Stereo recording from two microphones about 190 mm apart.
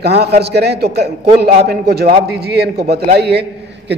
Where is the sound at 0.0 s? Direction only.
60° right (ahead or behind).